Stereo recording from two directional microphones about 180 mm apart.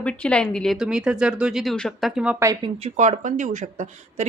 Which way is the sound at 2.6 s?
35° right (ahead or behind).